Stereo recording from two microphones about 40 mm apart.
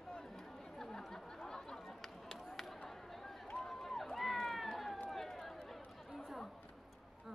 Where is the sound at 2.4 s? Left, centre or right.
Centre.